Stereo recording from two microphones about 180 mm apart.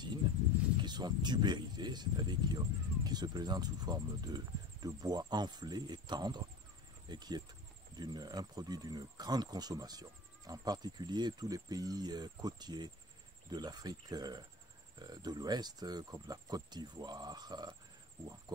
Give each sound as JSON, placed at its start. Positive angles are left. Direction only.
{"t": 0.8, "sound": "speech", "side_deg": -25}